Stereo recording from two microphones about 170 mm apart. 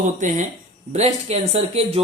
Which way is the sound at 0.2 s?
50° right (ahead or behind).